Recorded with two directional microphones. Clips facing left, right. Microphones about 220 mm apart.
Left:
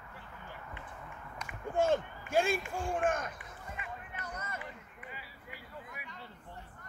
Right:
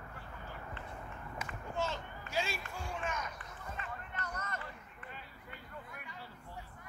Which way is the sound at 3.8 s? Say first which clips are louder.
Right 1 dB; 10° left (ahead or behind).